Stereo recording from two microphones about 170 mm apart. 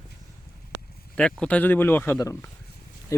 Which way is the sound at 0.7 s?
90° right.